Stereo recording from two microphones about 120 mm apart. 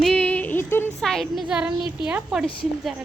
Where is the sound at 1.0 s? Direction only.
5° left (ahead or behind).